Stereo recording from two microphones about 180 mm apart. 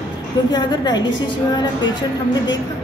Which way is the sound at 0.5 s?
25° left (ahead or behind).